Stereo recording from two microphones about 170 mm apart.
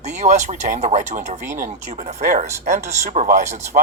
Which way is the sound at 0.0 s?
45° right (ahead or behind).